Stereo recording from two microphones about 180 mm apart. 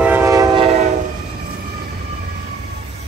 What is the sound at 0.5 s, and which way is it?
Train, 35° right (ahead or behind).